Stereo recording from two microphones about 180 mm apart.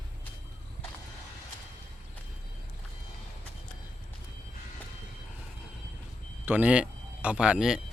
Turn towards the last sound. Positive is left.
turn(degrees=-5)  # may be behind; listen again after turning